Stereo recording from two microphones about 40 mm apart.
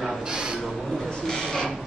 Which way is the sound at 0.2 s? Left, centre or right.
Centre.